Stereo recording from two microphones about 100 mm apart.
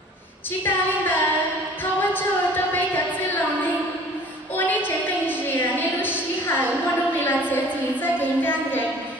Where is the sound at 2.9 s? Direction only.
15° left (ahead or behind).